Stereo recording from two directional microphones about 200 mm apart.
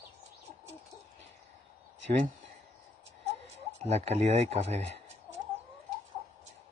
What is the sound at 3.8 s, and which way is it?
Speech, 30° right (ahead or behind).